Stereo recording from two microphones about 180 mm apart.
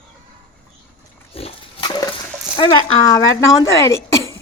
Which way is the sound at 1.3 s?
30° left (ahead or behind).